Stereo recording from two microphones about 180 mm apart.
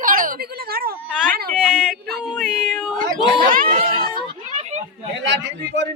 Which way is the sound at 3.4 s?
50° right (ahead or behind).